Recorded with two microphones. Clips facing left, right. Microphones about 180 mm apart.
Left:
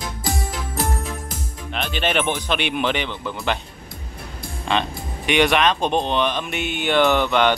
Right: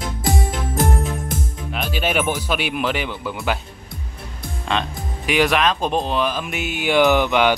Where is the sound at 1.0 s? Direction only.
Centre (ahead or behind).